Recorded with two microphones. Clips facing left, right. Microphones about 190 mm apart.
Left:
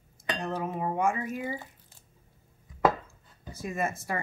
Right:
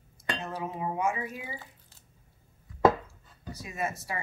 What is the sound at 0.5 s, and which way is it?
Music, 50° left (ahead or behind).